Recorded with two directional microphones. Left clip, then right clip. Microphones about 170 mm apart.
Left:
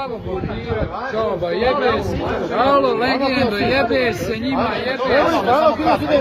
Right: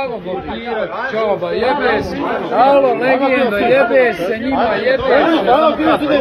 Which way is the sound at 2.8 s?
40° left (ahead or behind).